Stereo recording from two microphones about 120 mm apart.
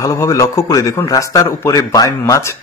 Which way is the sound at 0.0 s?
25° left (ahead or behind).